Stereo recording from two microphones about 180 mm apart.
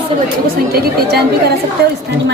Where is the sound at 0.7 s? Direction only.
60° right (ahead or behind).